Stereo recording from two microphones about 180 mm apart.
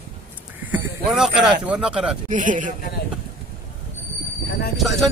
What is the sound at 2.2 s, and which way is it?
Speech, 45° right (ahead or behind).